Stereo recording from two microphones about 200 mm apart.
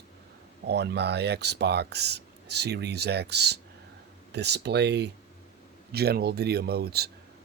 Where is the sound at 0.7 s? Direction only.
55° right (ahead or behind).